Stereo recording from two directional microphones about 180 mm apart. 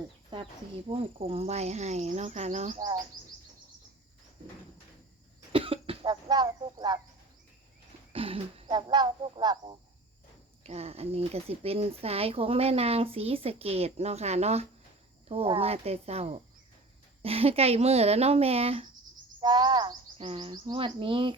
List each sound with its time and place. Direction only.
0.9 s speech: 30° right (ahead or behind)
5.5 s speech: 30° right (ahead or behind)
8.1 s speech: 30° right (ahead or behind)
10.6 s speech: 35° right (ahead or behind)